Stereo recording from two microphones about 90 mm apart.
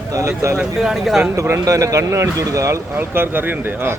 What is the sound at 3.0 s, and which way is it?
Speech, 25° right (ahead or behind).